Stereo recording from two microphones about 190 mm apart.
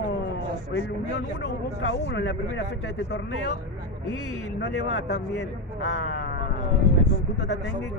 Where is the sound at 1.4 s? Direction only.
70° left (ahead or behind).